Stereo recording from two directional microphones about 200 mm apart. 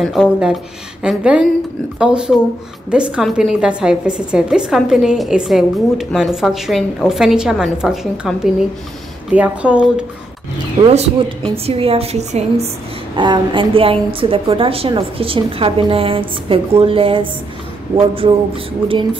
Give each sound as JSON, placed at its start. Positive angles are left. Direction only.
{"t": 0.0, "sound": "a woman's voice", "side_deg": 0}
{"t": 10.9, "sound": "a woman's voice", "side_deg": -30}
{"t": 13.1, "sound": "a woman's voice", "side_deg": -25}